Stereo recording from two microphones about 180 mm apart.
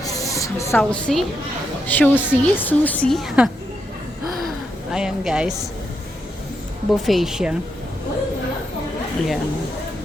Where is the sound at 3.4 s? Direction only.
5° right (ahead or behind).